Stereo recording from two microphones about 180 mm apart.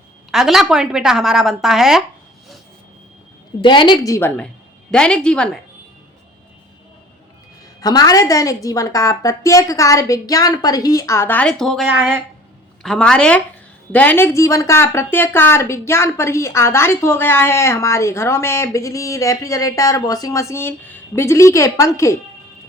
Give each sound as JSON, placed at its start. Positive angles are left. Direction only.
{"t": 0.3, "sound": "a woman's voice", "side_deg": 0}
{"t": 3.6, "sound": "a woman's voice", "side_deg": 25}
{"t": 4.9, "sound": "a woman's voice", "side_deg": 5}
{"t": 7.8, "sound": "speech", "side_deg": 20}
{"t": 12.8, "sound": "a woman's voice", "side_deg": 5}